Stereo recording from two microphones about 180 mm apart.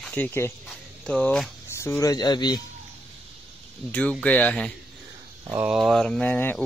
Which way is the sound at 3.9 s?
5° left (ahead or behind).